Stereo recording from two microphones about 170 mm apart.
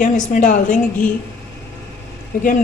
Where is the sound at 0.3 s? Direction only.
50° left (ahead or behind).